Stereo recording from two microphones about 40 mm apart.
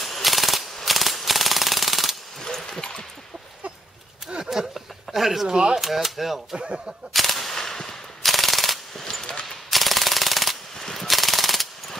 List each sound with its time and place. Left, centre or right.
0.0 s machine gun: centre
2.4 s a sound: centre
4.5 s a sound: centre
5.5 s speech: centre
5.8 s speech: centre
6.5 s speech: right
7.2 s machine gun: centre
9.2 s a sound: centre
9.7 s jackhammer: centre